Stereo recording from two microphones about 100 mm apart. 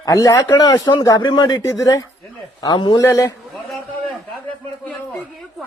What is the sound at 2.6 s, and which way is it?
Speech, 45° left (ahead or behind).